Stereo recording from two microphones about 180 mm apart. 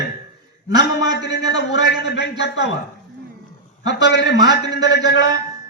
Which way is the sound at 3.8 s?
75° left (ahead or behind).